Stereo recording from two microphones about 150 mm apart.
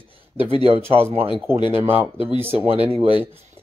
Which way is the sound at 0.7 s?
40° right (ahead or behind).